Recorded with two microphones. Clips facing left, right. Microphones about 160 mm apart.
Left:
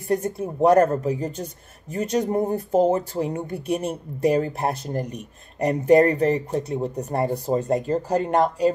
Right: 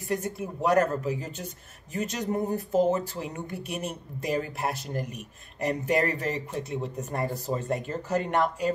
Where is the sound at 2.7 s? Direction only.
50° left (ahead or behind).